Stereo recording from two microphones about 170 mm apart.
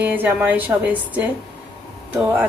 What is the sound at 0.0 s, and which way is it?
A woman's voice, 10° right (ahead or behind).